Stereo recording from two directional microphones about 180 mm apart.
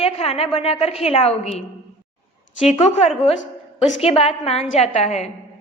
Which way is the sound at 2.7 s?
35° left (ahead or behind).